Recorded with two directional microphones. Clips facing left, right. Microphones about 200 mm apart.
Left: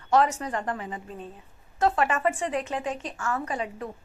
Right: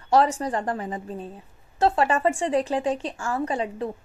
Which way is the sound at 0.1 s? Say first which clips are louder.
Right 3 dB; 35° right (ahead or behind).